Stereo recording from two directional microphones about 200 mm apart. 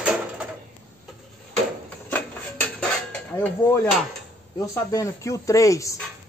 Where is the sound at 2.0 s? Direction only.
5° left (ahead or behind).